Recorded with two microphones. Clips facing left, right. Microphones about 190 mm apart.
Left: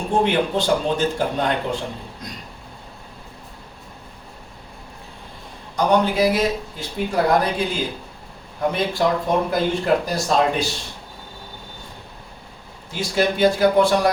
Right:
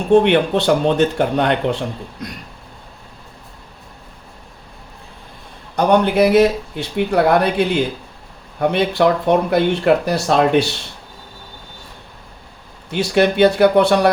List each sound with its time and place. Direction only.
0.1 s speech: 70° right (ahead or behind)
5.7 s speech: 65° right (ahead or behind)
12.9 s speech: 65° right (ahead or behind)